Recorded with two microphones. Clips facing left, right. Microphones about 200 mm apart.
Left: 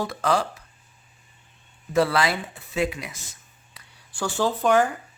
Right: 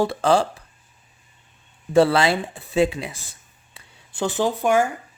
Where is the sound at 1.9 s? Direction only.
30° right (ahead or behind).